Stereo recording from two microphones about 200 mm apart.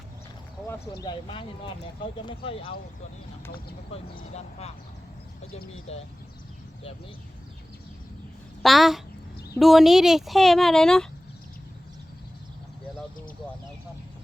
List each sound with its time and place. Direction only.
1.0 s speech: 25° left (ahead or behind)
4.2 s speech: 35° left (ahead or behind)
5.9 s speech: 30° left (ahead or behind)
8.6 s speech: centre (ahead or behind)